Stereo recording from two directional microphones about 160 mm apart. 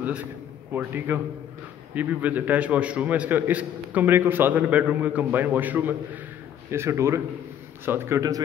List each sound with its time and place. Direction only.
0.0 s a man's voice: 10° right (ahead or behind)